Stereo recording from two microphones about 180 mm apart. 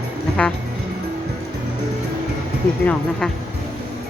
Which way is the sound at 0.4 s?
5° left (ahead or behind).